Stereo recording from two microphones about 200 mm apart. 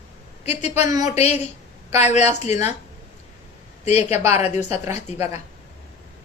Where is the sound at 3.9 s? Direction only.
30° left (ahead or behind).